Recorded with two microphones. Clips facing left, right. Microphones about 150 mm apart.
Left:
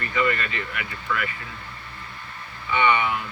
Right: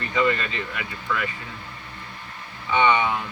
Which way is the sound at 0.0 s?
20° right (ahead or behind).